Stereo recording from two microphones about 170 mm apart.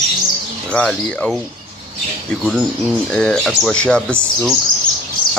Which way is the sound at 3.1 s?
5° left (ahead or behind).